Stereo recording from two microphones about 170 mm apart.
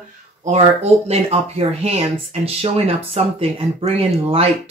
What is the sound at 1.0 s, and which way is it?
Speech, 35° right (ahead or behind).